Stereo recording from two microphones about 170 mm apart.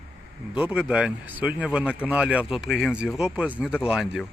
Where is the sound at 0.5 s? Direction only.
10° right (ahead or behind).